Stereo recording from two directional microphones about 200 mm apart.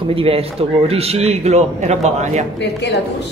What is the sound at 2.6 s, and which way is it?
Speech, 60° left (ahead or behind).